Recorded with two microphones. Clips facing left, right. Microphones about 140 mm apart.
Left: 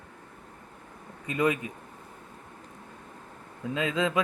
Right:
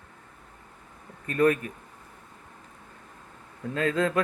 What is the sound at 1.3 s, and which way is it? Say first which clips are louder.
Speech: right 4 dB; 15° left (ahead or behind).